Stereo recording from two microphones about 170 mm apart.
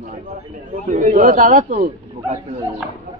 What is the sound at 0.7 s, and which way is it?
A man's voice, 45° right (ahead or behind).